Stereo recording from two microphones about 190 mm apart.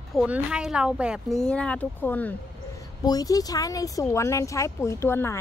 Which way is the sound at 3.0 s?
20° left (ahead or behind).